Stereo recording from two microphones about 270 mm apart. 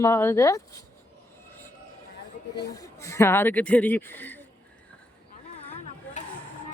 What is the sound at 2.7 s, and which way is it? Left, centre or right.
Speech, centre.